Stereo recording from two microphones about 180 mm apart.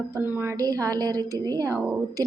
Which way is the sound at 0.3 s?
15° right (ahead or behind).